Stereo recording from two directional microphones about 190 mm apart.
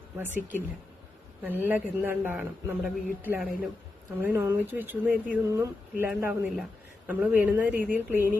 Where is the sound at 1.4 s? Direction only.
10° right (ahead or behind).